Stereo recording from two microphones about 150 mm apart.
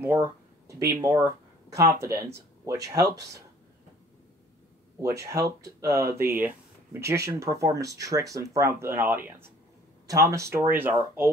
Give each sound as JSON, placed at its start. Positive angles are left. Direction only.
{"t": 0.0, "sound": "speech", "side_deg": -15}
{"t": 5.0, "sound": "speech", "side_deg": -20}